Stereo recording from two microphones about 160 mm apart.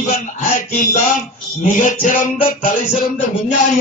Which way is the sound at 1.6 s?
55° left (ahead or behind).